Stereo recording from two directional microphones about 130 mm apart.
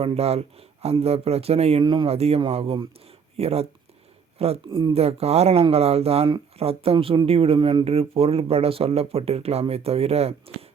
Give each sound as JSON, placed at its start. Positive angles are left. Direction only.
{"t": 0.0, "sound": "speech", "side_deg": -50}
{"t": 1.8, "sound": "speech", "side_deg": -40}
{"t": 4.6, "sound": "speech", "side_deg": -30}
{"t": 4.9, "sound": "speech", "side_deg": -50}